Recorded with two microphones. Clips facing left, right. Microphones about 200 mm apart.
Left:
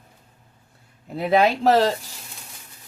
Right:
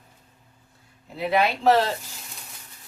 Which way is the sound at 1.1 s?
45° left (ahead or behind).